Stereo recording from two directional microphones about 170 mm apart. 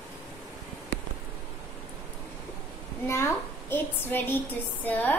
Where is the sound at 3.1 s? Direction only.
15° left (ahead or behind).